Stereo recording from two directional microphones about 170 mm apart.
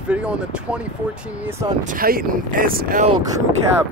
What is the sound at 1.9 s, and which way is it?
Speech, 60° right (ahead or behind).